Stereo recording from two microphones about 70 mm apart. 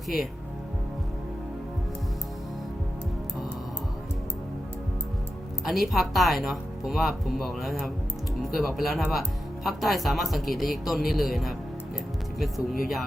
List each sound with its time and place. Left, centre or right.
5.6 s speech: centre